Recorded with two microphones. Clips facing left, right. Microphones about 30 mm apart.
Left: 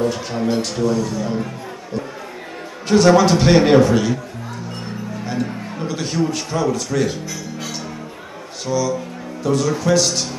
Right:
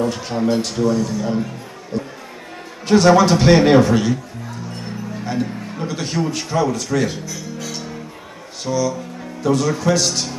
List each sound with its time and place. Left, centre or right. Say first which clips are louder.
0.3 s a man's voice: right 1 dB; centre
0.8 s a man's voice: right 1 dB; left
1.9 s music: right 1 dB; centre
2.9 s a man's voice: even; centre
5.2 s speech: right 1 dB; centre
8.6 s a man's voice: even; centre